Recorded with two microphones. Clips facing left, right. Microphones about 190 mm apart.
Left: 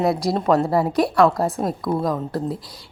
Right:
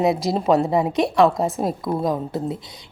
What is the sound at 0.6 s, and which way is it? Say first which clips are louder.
Speech: even; 20° right (ahead or behind).